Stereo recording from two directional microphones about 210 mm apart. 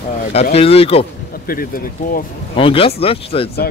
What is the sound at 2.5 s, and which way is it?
Speech, 25° left (ahead or behind).